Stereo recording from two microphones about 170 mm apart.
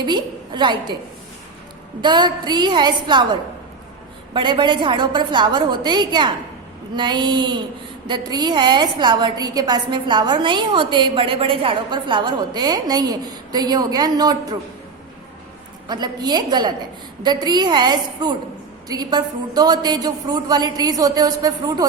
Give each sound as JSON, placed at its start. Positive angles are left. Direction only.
{"t": 0.0, "sound": "a woman's voice", "side_deg": -25}
{"t": 2.0, "sound": "a woman's voice", "side_deg": -25}
{"t": 4.4, "sound": "a woman's voice", "side_deg": -25}
{"t": 15.9, "sound": "a woman's voice", "side_deg": -25}